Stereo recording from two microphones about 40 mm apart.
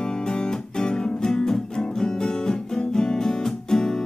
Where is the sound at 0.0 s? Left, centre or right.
Centre.